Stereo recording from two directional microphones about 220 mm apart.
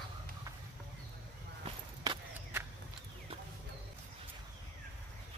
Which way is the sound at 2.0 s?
15° right (ahead or behind).